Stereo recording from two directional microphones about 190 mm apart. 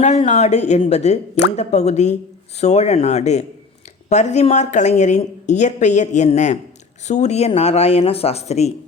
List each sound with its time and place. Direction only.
0.0 s a woman's voice: 35° left (ahead or behind)